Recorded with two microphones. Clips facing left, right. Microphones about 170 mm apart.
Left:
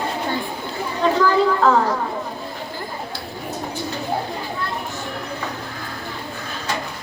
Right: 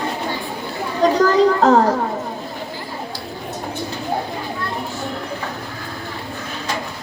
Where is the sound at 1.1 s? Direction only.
40° right (ahead or behind).